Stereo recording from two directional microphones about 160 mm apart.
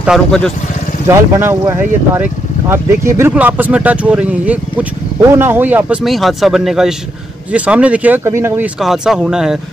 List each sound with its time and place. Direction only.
0.0 s speech: centre (ahead or behind)
1.0 s speech: 15° right (ahead or behind)
8.8 s speech: 5° right (ahead or behind)